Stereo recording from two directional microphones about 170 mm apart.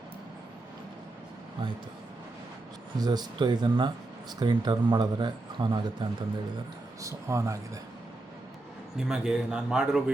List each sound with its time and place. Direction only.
3.0 s speech: 25° right (ahead or behind)
9.0 s a man's voice: 5° right (ahead or behind)